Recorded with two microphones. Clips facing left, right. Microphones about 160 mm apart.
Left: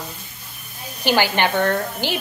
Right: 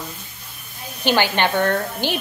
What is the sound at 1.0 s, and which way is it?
Speech, 10° left (ahead or behind).